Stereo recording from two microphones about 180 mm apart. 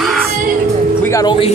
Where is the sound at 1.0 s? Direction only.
20° left (ahead or behind).